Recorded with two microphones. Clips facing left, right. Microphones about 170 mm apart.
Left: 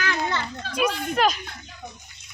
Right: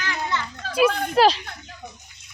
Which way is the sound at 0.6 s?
45° right (ahead or behind).